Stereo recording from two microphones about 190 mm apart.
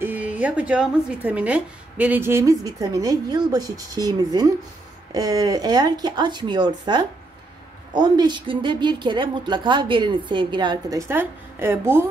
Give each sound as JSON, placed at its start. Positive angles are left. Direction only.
{"t": 0.0, "sound": "a woman's voice", "side_deg": -10}